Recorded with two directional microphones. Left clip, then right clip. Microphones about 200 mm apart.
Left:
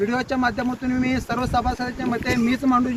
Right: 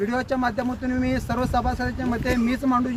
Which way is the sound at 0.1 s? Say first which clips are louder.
Left 2 dB; 30° right (ahead or behind).